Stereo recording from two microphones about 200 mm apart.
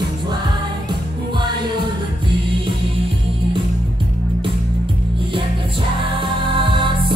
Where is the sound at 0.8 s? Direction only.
20° right (ahead or behind).